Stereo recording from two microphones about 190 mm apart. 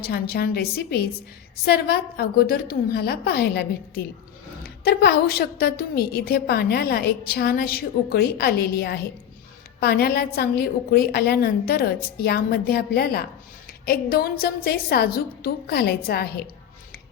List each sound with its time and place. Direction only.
0.0 s a woman's voice: 55° left (ahead or behind)